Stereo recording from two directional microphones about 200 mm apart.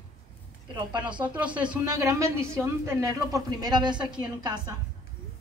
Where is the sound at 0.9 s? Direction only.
25° right (ahead or behind).